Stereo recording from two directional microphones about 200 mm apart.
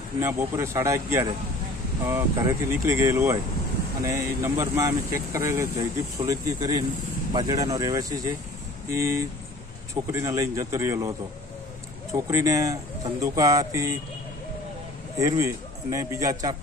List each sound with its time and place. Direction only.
0.2 s speech: 15° right (ahead or behind)
15.1 s speech: 15° right (ahead or behind)